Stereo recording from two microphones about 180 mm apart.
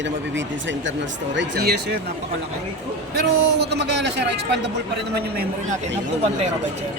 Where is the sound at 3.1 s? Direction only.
65° right (ahead or behind).